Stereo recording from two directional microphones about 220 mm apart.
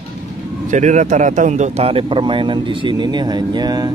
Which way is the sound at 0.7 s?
35° right (ahead or behind).